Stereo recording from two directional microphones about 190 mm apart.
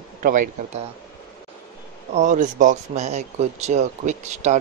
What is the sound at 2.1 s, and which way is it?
Speech, 40° right (ahead or behind).